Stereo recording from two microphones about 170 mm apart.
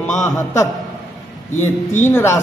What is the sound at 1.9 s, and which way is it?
Speech, 15° left (ahead or behind).